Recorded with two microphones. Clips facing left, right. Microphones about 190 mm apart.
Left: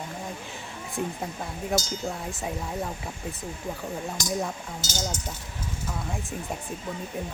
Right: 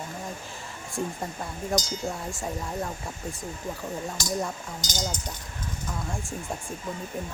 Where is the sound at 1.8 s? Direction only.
20° right (ahead or behind).